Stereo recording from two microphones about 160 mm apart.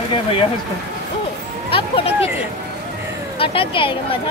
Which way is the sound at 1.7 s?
35° left (ahead or behind).